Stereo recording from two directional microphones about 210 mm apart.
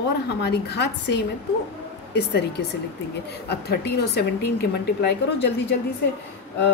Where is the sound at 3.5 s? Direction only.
50° left (ahead or behind).